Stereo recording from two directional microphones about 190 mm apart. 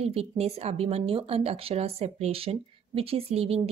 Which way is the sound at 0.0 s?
35° right (ahead or behind).